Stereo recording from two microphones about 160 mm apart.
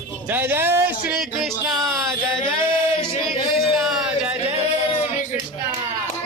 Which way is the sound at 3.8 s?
5° right (ahead or behind).